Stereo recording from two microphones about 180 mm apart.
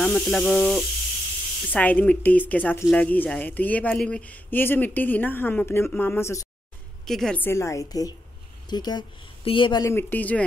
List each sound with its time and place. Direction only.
0.0 s speech: 5° left (ahead or behind)
7.1 s speech: 5° left (ahead or behind)